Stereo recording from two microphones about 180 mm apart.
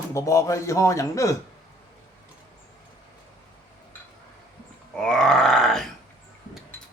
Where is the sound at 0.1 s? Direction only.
15° left (ahead or behind).